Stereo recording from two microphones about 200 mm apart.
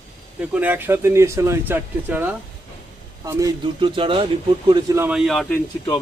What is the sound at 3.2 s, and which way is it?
Speech, 20° right (ahead or behind).